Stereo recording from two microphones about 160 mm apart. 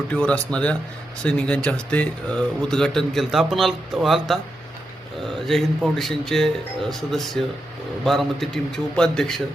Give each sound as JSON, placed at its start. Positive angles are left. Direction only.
{"t": 0.1, "sound": "speech", "side_deg": 10}
{"t": 5.4, "sound": "speech", "side_deg": 0}